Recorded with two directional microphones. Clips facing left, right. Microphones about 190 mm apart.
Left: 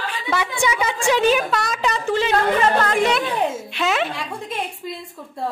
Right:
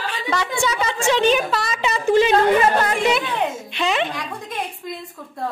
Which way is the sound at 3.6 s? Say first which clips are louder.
Even; centre (ahead or behind).